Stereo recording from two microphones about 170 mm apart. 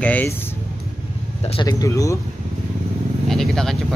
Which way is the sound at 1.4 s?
25° left (ahead or behind).